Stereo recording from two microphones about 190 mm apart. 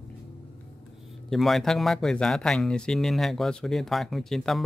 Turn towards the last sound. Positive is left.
turn(degrees=0)  # may be behind; listen again after turning